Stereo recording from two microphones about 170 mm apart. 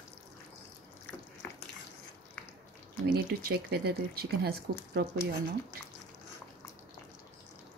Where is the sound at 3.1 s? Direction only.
70° right (ahead or behind).